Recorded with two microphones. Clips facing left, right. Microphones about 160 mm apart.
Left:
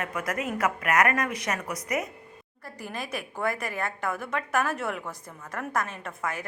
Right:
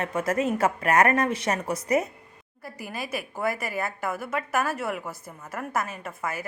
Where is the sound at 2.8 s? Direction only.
5° right (ahead or behind).